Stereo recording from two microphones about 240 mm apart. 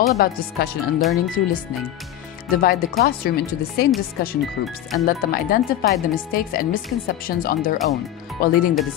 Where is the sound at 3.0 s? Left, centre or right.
Left.